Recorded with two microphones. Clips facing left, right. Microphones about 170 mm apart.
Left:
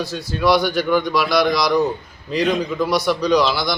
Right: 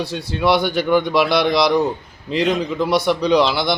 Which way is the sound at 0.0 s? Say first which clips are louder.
Even; 30° right (ahead or behind).